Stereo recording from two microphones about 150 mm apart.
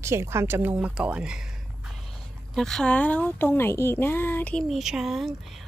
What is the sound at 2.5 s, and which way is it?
A woman's voice, 5° left (ahead or behind).